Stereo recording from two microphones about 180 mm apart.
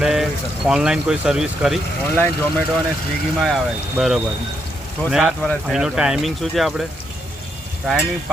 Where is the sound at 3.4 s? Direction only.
Centre (ahead or behind).